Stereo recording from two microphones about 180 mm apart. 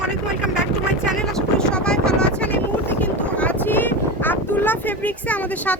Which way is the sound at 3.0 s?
10° left (ahead or behind).